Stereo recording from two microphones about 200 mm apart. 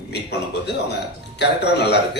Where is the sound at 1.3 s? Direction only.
55° left (ahead or behind).